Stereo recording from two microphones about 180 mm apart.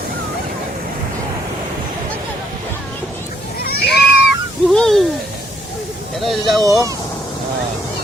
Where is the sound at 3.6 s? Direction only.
60° left (ahead or behind).